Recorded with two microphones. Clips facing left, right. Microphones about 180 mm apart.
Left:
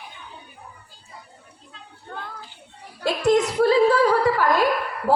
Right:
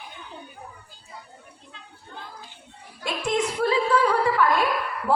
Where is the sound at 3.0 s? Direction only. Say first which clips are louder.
Left 7 dB; 40° left (ahead or behind).